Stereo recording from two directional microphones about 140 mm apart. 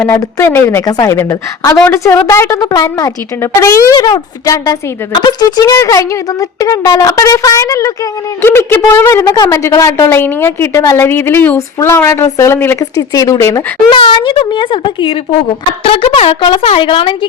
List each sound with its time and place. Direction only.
0.2 s a woman's voice: 20° left (ahead or behind); by 17.2 s 40° left (ahead or behind)